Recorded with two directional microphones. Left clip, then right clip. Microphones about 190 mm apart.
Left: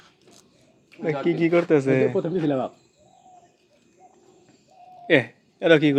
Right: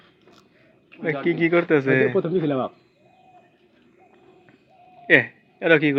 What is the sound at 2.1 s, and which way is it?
Speech, 40° right (ahead or behind).